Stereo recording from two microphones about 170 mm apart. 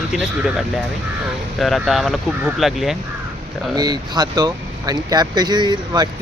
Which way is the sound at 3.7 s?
25° right (ahead or behind).